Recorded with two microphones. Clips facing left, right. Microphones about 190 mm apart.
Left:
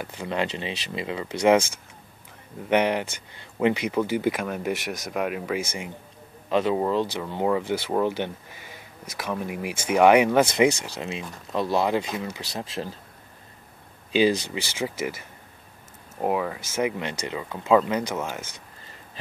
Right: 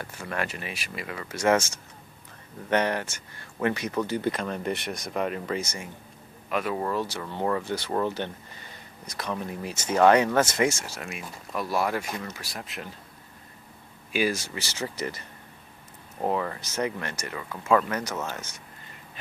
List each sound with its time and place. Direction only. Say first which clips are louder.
0.0 s speech: left 4 dB; 20° left (ahead or behind)
2.7 s speech: left 3 dB; 15° left (ahead or behind)
6.5 s speech: left 5 dB; 25° left (ahead or behind)
14.1 s speech: left 6 dB; 20° left (ahead or behind)